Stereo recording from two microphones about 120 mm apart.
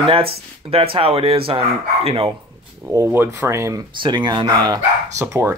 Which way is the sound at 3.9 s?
40° right (ahead or behind).